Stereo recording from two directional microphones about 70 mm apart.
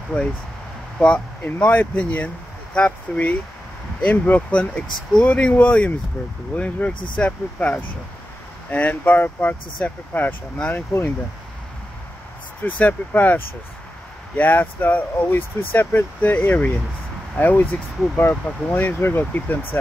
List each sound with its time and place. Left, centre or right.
0.9 s speech: centre
12.6 s speech: left